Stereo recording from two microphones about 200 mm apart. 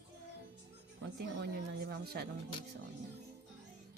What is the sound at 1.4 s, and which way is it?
Speech, 55° right (ahead or behind).